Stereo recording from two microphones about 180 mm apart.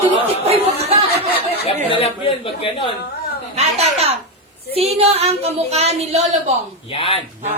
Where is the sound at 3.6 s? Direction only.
35° right (ahead or behind).